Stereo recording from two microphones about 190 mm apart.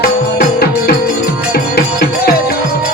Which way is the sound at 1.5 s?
55° left (ahead or behind).